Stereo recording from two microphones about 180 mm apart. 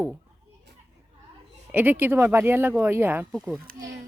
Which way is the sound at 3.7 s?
55° right (ahead or behind).